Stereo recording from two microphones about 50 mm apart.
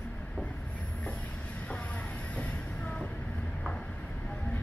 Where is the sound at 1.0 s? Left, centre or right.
Left.